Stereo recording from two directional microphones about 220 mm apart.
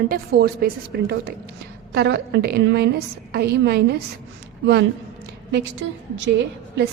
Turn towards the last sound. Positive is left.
turn(degrees=-55)  # may be behind; listen again after turning